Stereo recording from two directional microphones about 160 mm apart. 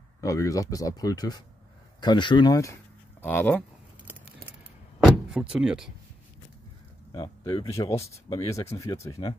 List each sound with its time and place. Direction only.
0.2 s speech: 20° left (ahead or behind)
5.0 s door: 5° right (ahead or behind)
7.4 s speech: 35° left (ahead or behind)
7.7 s speech: 20° left (ahead or behind)